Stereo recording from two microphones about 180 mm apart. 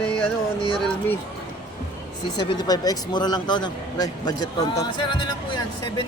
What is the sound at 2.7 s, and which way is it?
Speech, 20° left (ahead or behind).